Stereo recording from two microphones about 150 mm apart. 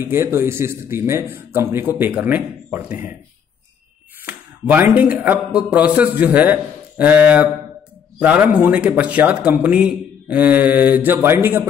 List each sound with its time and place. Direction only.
0.0 s speech: 15° right (ahead or behind)
4.3 s speech: 10° right (ahead or behind)